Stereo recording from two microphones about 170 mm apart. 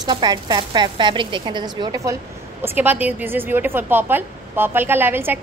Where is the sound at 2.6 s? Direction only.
10° right (ahead or behind).